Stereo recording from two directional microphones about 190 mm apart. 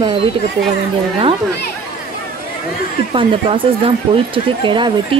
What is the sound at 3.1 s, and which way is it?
Speech, 30° right (ahead or behind).